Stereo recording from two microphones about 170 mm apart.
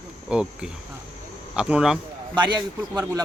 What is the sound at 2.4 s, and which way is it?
Speech, 25° right (ahead or behind).